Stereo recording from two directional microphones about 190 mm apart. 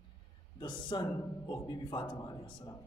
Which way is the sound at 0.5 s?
25° left (ahead or behind).